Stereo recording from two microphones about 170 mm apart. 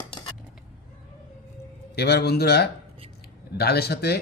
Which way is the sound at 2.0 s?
70° left (ahead or behind).